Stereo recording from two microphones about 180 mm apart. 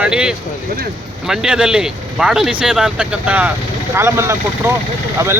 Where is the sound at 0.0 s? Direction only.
5° right (ahead or behind).